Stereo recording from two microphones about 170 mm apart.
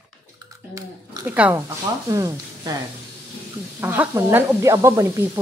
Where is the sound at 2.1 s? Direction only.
20° right (ahead or behind).